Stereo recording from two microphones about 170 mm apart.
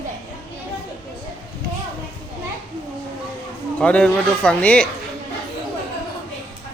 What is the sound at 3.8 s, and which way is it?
Speech, 5° left (ahead or behind).